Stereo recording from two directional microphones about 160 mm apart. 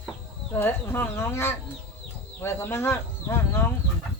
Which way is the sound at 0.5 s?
15° left (ahead or behind).